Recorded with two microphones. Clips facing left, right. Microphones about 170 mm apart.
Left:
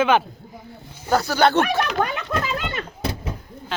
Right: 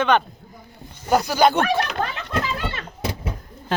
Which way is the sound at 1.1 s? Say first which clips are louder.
Right 1 dB; 15° right (ahead or behind).